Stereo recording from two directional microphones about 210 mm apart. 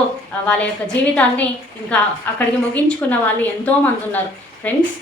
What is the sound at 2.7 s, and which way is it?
A woman's voice, 5° left (ahead or behind).